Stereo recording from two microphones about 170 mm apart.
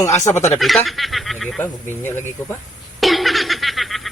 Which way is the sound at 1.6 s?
15° left (ahead or behind).